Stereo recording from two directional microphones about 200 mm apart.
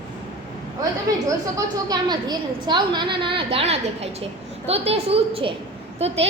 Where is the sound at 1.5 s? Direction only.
20° right (ahead or behind).